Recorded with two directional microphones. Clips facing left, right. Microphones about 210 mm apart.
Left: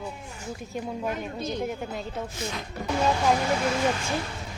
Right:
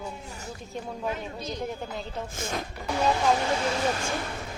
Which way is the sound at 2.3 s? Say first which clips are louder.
Right 1 dB; 50° right (ahead or behind).